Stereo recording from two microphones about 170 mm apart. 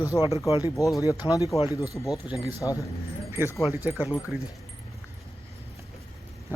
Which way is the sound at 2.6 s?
20° left (ahead or behind).